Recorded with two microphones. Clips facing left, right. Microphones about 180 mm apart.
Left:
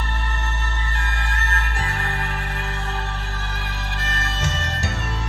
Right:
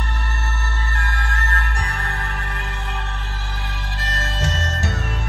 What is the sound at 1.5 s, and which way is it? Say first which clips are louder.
Music: even; 20° left (ahead or behind).